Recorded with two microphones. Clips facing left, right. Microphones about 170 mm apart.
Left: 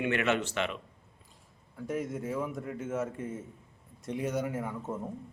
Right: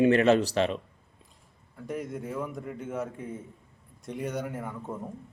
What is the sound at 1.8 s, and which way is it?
A man's voice, centre (ahead or behind).